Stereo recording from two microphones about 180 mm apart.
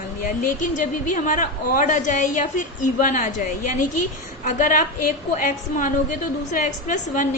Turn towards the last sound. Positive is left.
turn(degrees=45)  # may be behind; listen again after turning